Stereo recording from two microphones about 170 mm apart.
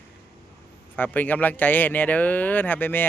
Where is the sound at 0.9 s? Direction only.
10° left (ahead or behind).